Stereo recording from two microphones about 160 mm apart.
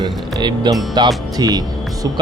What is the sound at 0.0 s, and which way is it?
Speech, 25° right (ahead or behind).